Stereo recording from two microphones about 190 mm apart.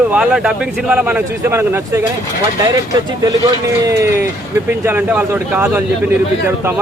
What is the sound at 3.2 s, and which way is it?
Speech, 20° right (ahead or behind).